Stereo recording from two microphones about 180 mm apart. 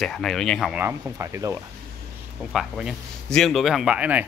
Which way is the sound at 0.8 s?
15° right (ahead or behind).